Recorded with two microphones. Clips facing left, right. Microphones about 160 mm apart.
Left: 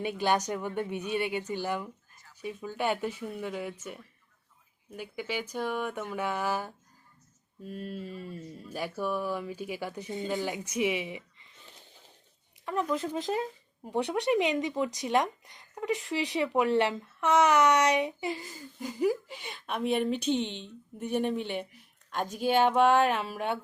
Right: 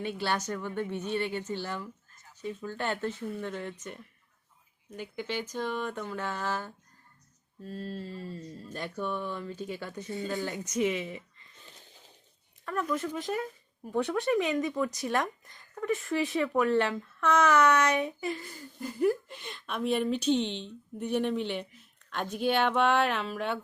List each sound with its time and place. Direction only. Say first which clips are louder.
0.0 s speech: left 4 dB; 15° left (ahead or behind)
12.6 s speech: left 1 dB; 20° left (ahead or behind)
19.5 s speech: left 1 dB; 55° left (ahead or behind)
21.1 s speech: even; 10° left (ahead or behind)
21.3 s speech: right 1 dB; 50° left (ahead or behind)
23.1 s speech: left 1 dB; 10° left (ahead or behind)